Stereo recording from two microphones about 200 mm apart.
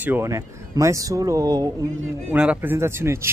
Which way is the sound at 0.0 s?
10° right (ahead or behind).